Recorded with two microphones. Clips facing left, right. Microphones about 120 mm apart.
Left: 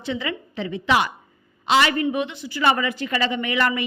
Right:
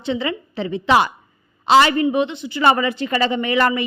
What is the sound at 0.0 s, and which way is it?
A woman's voice, 30° right (ahead or behind).